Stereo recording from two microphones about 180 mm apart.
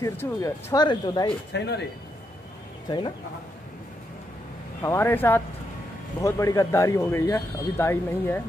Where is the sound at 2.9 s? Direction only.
25° left (ahead or behind).